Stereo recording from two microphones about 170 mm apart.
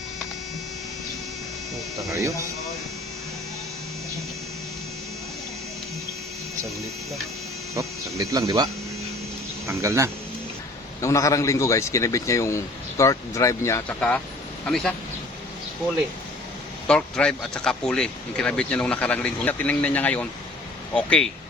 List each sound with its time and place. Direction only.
2.0 s speech: 20° right (ahead or behind)
7.8 s speech: 20° right (ahead or behind)
11.0 s speech: 20° left (ahead or behind); by 14.9 s 5° left (ahead or behind)
16.8 s speech: 5° left (ahead or behind)